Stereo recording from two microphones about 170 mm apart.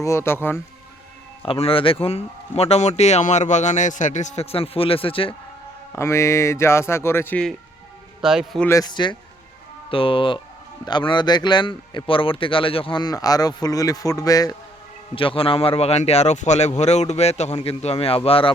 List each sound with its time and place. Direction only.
0.0 s speech: 15° left (ahead or behind)
1.4 s speech: 35° left (ahead or behind)
5.9 s speech: 15° left (ahead or behind)
8.2 s speech: 5° right (ahead or behind)
8.6 s a man's voice: 20° left (ahead or behind)
15.1 s speech: 30° left (ahead or behind)